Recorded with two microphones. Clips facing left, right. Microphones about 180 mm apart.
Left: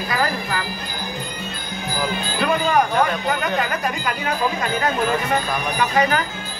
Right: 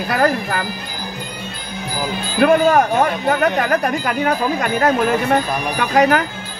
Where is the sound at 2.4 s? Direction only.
55° right (ahead or behind).